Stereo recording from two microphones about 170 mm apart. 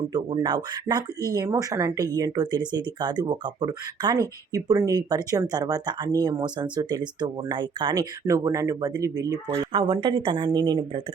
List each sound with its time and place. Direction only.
0.1 s speech: 25° right (ahead or behind)